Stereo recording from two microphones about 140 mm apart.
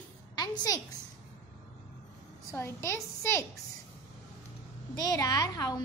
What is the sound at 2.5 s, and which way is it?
Speech, 20° left (ahead or behind).